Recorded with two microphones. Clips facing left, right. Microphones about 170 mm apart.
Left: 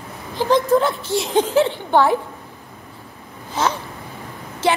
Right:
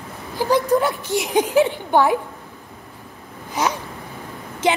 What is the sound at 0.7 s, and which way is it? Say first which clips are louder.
A woman's voice: left 1 dB; 15° right (ahead or behind).